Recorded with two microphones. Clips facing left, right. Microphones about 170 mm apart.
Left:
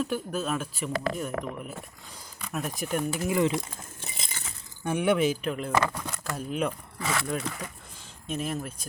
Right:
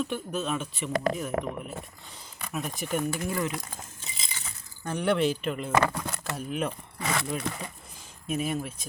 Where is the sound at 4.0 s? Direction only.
60° left (ahead or behind).